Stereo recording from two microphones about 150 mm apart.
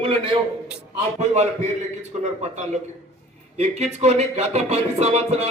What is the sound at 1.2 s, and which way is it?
Music, 50° right (ahead or behind).